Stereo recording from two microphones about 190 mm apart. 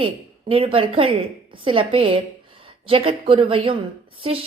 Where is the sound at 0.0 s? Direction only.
30° right (ahead or behind).